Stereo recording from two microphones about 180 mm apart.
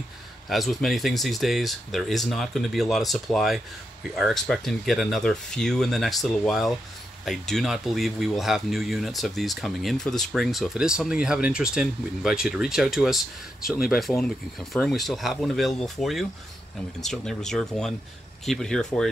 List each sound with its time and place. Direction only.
0.5 s speech: centre (ahead or behind)